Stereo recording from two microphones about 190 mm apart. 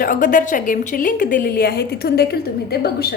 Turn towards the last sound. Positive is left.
turn(degrees=55)  # may be behind; listen again after turning